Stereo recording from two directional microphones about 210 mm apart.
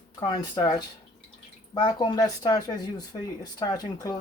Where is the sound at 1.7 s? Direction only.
20° left (ahead or behind).